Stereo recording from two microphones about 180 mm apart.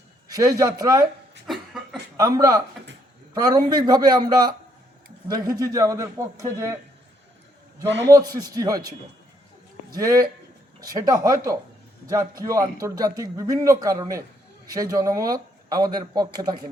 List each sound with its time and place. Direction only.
0.3 s speech: 20° right (ahead or behind)
1.5 s cough: centre (ahead or behind)
2.1 s a man's voice: 20° right (ahead or behind)
8.0 s speech: 20° right (ahead or behind)
9.9 s speech: 20° right (ahead or behind)
12.8 s speech: 20° right (ahead or behind)